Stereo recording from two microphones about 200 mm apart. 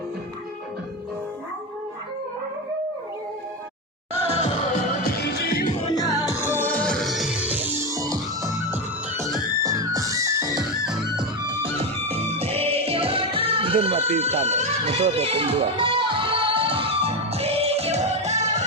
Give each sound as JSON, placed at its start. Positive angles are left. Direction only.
{"t": 4.4, "sound": "music", "side_deg": 30}
{"t": 5.1, "sound": "music", "side_deg": 55}
{"t": 5.9, "sound": "music", "side_deg": 20}